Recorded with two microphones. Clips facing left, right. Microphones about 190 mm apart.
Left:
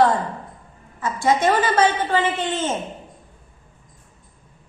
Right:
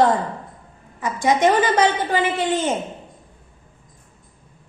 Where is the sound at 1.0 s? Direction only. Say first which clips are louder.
Right 1 dB; 15° right (ahead or behind).